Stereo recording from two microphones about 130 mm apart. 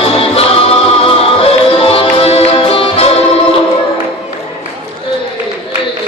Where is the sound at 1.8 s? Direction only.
45° left (ahead or behind).